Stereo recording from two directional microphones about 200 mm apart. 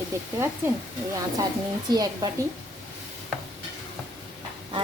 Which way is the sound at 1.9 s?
20° right (ahead or behind).